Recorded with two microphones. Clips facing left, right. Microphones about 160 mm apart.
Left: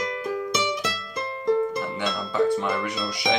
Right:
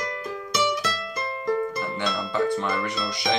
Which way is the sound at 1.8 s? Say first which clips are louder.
Even; 5° left (ahead or behind).